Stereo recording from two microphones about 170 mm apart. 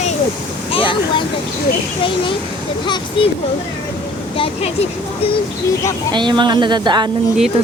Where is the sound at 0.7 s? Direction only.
30° left (ahead or behind).